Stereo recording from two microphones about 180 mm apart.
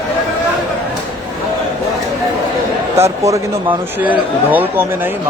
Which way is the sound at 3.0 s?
15° right (ahead or behind).